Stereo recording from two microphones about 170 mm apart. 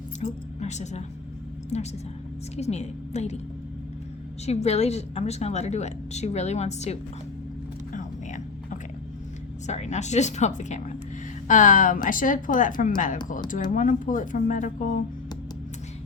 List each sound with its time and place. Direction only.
0.2 s a woman's voice: 40° left (ahead or behind)
4.4 s a woman's voice: 40° left (ahead or behind)
7.9 s a sound: 50° left (ahead or behind)
9.6 s speech: 40° left (ahead or behind)